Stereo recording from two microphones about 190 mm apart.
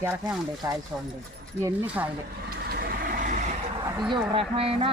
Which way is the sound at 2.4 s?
50° right (ahead or behind).